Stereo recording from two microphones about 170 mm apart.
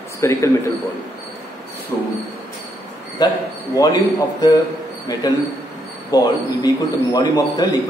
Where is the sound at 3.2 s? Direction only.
25° left (ahead or behind).